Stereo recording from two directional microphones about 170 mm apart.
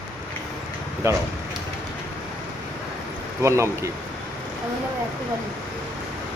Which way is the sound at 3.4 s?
15° right (ahead or behind).